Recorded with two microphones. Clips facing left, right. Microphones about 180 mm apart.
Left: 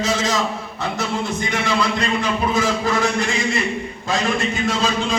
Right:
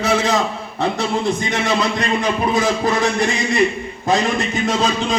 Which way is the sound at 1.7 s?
20° right (ahead or behind).